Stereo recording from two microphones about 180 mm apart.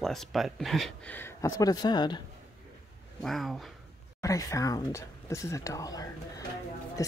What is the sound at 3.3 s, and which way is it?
Speech, centre (ahead or behind).